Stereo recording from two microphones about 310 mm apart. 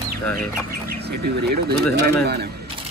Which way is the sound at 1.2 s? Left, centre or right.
Right.